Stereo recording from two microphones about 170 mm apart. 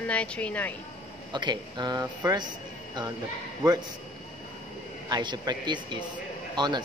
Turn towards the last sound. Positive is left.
turn(degrees=-25)  # may be behind; listen again after turning